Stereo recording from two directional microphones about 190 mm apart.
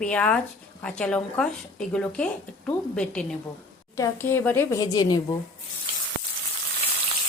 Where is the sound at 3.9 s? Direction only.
15° left (ahead or behind).